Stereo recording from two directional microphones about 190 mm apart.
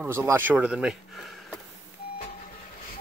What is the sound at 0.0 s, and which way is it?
Speech, 10° right (ahead or behind).